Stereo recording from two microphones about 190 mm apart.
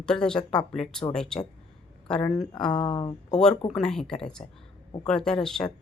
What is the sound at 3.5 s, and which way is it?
Speech, 30° left (ahead or behind).